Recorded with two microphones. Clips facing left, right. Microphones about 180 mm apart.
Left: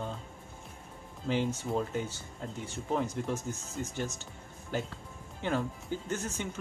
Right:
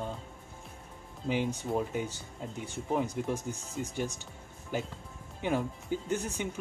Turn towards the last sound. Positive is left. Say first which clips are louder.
# right 2 dB
turn(degrees=-15)  # may be behind; listen again after turning